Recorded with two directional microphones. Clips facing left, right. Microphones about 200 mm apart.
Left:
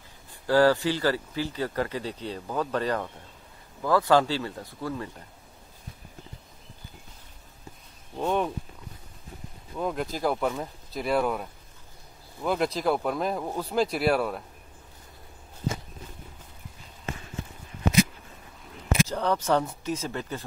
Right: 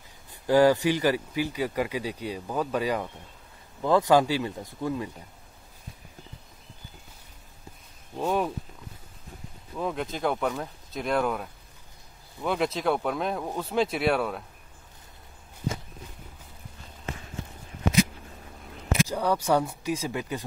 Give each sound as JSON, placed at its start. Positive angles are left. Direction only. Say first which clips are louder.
{"t": 0.3, "sound": "speech", "louder": "right 1 dB", "side_deg": -15}
{"t": 8.2, "sound": "speech", "louder": "even", "side_deg": -5}
{"t": 9.8, "sound": "speech", "louder": "left 1 dB", "side_deg": 0}
{"t": 19.0, "sound": "speech", "louder": "right 1 dB", "side_deg": -10}